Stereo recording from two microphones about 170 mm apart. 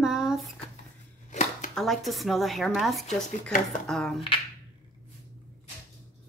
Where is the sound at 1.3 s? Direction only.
45° left (ahead or behind).